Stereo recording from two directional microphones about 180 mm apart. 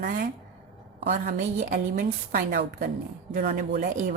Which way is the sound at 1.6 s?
45° right (ahead or behind).